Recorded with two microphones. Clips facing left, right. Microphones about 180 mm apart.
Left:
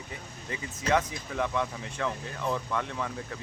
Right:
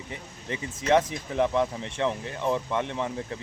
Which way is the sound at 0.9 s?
25° right (ahead or behind).